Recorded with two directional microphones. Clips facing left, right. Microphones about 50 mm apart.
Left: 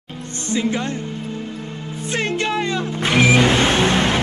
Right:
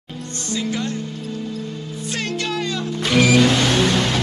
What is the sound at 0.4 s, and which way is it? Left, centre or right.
Speech, left.